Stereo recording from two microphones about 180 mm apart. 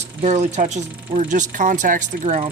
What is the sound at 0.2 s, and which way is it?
Speech, 40° right (ahead or behind).